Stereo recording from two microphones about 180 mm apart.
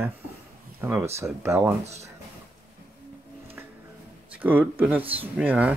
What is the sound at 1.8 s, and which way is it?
Speech, 35° right (ahead or behind).